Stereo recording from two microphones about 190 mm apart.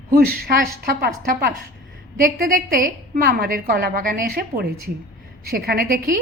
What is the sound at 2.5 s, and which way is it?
A woman's voice, 45° right (ahead or behind).